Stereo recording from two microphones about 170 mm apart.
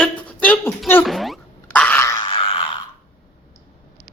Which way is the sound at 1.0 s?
Centre (ahead or behind).